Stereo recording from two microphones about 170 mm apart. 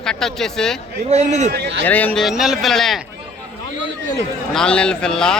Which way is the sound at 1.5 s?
80° right.